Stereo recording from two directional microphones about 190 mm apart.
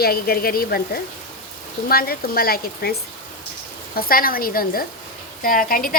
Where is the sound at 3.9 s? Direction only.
50° left (ahead or behind).